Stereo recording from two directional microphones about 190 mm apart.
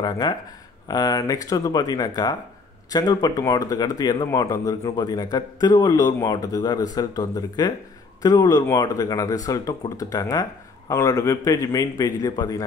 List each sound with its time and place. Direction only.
0.0 s a man's voice: 20° left (ahead or behind)